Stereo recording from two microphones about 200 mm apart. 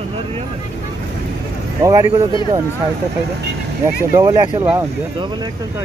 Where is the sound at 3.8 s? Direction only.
15° right (ahead or behind).